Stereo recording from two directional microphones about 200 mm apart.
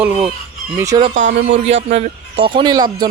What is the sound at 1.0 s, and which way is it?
A man's voice, 35° right (ahead or behind).